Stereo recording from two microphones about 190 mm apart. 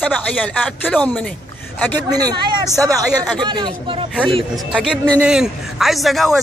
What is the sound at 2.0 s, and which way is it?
Speech, 20° right (ahead or behind).